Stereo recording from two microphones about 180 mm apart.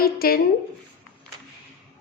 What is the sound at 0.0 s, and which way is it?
Speech, 55° left (ahead or behind).